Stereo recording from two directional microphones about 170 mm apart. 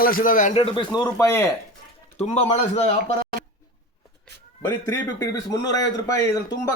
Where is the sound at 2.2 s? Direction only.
40° left (ahead or behind).